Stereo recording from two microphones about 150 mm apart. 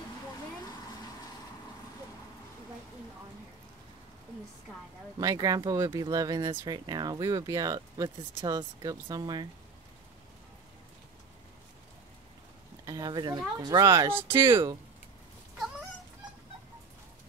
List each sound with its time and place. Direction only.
5.2 s speech: 25° right (ahead or behind)
12.8 s a sound: 25° right (ahead or behind)
13.6 s speech: 25° right (ahead or behind)
14.1 s speech: 15° right (ahead or behind)